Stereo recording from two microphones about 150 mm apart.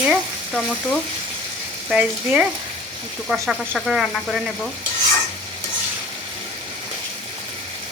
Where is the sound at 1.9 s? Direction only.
5° right (ahead or behind).